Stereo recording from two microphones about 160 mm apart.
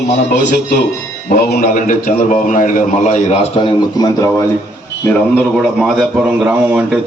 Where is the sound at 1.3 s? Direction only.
70° left (ahead or behind); by 3.2 s 45° left (ahead or behind).